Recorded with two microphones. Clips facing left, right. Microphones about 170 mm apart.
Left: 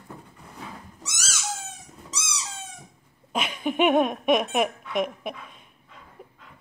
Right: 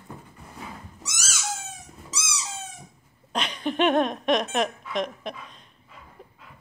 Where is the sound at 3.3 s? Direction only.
5° left (ahead or behind).